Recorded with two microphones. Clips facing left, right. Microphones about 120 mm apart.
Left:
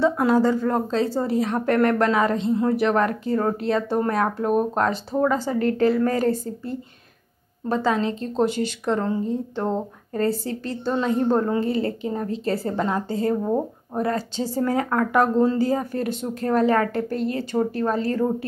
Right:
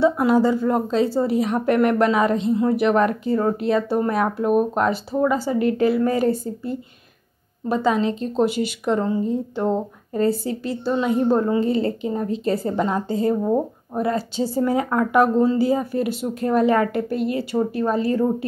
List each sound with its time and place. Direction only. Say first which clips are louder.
0.0 s a woman's voice: right 2 dB; 10° right (ahead or behind)
10.1 s a woman's voice: right 3 dB; 15° right (ahead or behind)
11.6 s a woman's voice: right 3 dB; 25° right (ahead or behind)